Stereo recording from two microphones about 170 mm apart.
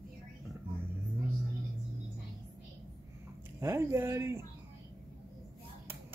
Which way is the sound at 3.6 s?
15° right (ahead or behind).